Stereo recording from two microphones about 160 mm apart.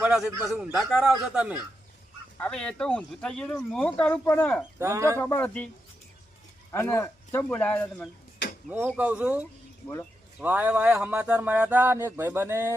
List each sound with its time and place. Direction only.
0.0 s a man's voice: 5° right (ahead or behind)
2.4 s speech: 5° left (ahead or behind)
4.8 s speech: 20° right (ahead or behind)
5.1 s speech: 15° left (ahead or behind)
6.7 s speech: 20° left (ahead or behind)
8.4 s a sound: 90° left
8.9 s speech: 10° right (ahead or behind)
9.8 s speech: 10° left (ahead or behind)
10.4 s speech: 10° right (ahead or behind)